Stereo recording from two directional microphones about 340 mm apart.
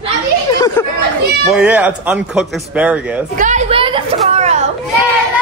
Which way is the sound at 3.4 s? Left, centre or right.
Right.